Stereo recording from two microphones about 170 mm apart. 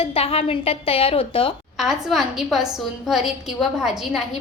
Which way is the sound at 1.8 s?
Centre (ahead or behind).